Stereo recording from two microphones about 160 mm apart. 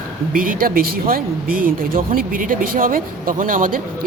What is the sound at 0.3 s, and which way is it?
Speech, 60° right (ahead or behind).